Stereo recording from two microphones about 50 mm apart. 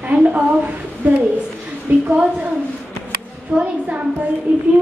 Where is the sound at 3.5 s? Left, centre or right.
Right.